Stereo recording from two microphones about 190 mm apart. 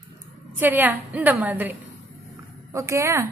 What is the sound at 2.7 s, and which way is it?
Speech, 15° right (ahead or behind).